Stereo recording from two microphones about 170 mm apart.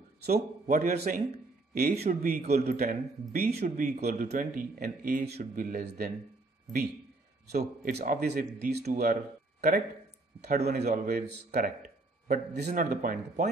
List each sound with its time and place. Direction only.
0.2 s speech: 60° right (ahead or behind)
2.5 s speech: 65° right (ahead or behind); by 4.0 s 50° right (ahead or behind)
4.0 s speech: 65° right (ahead or behind)
7.5 s a man's voice: 65° right (ahead or behind)
12.3 s speech: 45° right (ahead or behind)
12.9 s speech: 60° right (ahead or behind)